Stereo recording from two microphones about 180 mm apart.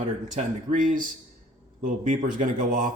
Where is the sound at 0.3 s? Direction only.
45° right (ahead or behind).